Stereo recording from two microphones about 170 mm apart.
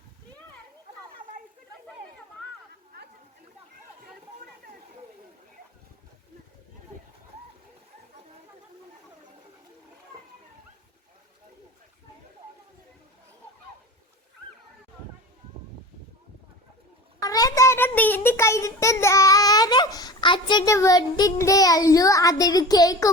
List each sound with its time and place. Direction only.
17.2 s a child's voice: 20° left (ahead or behind)